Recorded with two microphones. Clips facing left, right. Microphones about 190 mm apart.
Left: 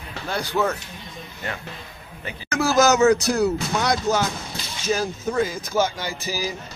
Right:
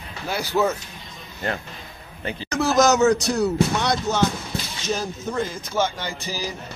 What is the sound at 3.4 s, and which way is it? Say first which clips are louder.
Speech: right 1 dB; 10° left (ahead or behind).